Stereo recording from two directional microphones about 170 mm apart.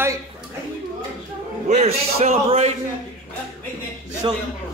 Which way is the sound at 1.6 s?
40° right (ahead or behind).